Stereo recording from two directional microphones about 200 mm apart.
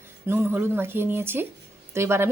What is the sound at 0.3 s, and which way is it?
A woman's voice, 10° right (ahead or behind).